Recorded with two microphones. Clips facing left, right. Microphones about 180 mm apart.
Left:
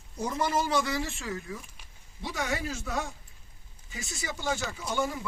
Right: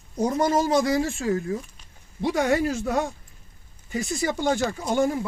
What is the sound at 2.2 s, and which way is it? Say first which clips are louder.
Speech: right 11 dB; 60° right (ahead or behind).